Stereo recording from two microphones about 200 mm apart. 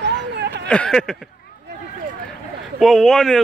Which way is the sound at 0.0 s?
60° right (ahead or behind).